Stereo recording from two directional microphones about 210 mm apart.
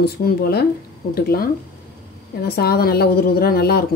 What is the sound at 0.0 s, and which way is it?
A woman's voice, 50° left (ahead or behind).